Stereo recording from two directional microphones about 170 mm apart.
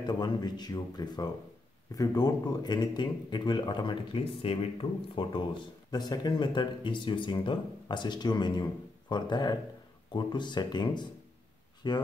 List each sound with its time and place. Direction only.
0.0 s speech: 25° left (ahead or behind)